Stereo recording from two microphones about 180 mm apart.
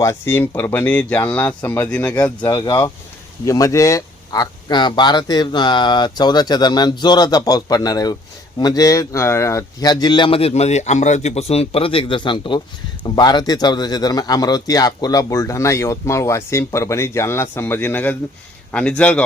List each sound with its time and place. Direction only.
0.0 s speech: 15° left (ahead or behind)
2.4 s speech: 20° left (ahead or behind)